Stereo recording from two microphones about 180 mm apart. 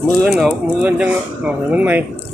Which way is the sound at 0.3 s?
5° right (ahead or behind).